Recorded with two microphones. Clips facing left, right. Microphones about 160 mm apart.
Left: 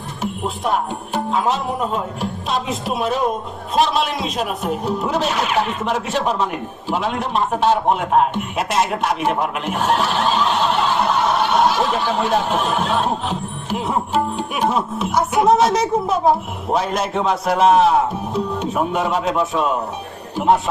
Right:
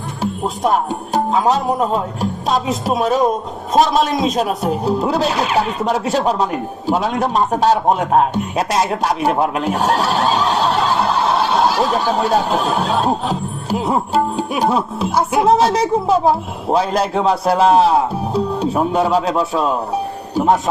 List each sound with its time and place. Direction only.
0.2 s a man's voice: 40° right (ahead or behind)